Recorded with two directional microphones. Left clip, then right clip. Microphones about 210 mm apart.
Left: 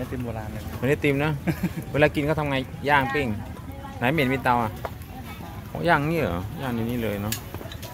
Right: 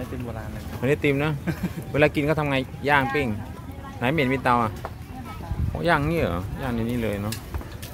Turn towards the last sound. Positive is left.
turn(degrees=-5)  # may be behind; listen again after turning